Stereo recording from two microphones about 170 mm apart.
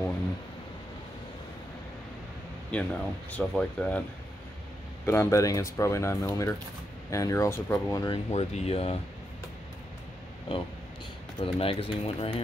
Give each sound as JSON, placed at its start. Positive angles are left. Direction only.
{"t": 2.7, "sound": "speech", "side_deg": 5}
{"t": 5.0, "sound": "speech", "side_deg": 15}
{"t": 8.3, "sound": "speech", "side_deg": 40}
{"t": 11.3, "sound": "speech", "side_deg": 30}